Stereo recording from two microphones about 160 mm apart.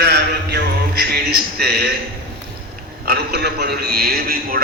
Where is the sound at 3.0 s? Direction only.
80° right; by 4.6 s 65° right (ahead or behind).